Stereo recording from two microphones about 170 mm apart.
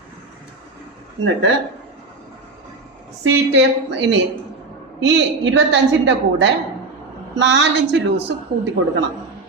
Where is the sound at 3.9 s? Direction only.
90° right.